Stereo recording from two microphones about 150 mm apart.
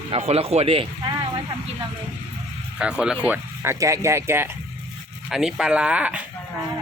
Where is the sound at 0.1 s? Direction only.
45° right (ahead or behind).